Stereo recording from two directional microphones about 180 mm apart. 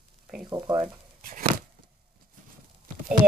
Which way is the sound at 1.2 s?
50° right (ahead or behind).